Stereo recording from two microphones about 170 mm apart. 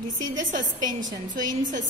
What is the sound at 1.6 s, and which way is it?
Speech, 50° right (ahead or behind).